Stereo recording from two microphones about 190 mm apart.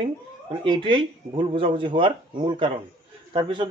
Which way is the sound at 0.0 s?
25° right (ahead or behind).